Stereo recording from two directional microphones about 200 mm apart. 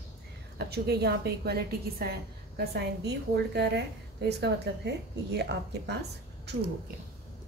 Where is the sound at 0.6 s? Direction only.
55° right (ahead or behind).